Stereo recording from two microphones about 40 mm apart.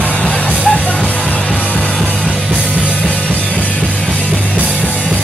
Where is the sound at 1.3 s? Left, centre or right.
Left.